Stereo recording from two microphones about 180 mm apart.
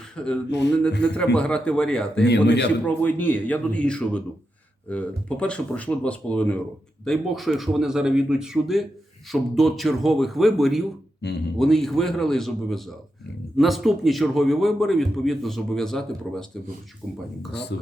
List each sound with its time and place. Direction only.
0.2 s a man's voice: 5° left (ahead or behind)
2.2 s a man's voice: 70° left (ahead or behind)
2.8 s a man's voice: 10° left (ahead or behind)
17.5 s a man's voice: 70° left (ahead or behind)